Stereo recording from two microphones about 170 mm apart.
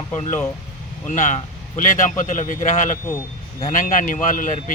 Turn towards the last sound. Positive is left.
turn(degrees=50)  # may be behind; listen again after turning